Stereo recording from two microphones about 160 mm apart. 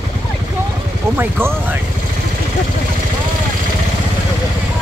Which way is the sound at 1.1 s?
15° right (ahead or behind).